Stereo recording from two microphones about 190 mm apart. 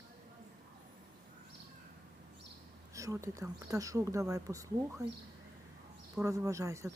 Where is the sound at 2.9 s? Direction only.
15° right (ahead or behind).